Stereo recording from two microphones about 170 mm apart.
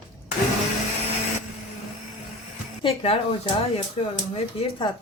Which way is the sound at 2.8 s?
35° left (ahead or behind).